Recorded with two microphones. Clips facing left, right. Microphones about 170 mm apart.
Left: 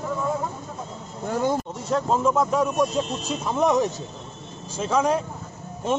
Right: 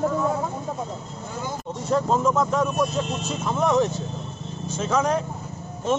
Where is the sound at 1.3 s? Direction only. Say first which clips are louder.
Left 9 dB; 65° left (ahead or behind).